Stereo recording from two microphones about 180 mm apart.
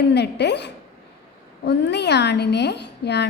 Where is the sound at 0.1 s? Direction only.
70° left (ahead or behind).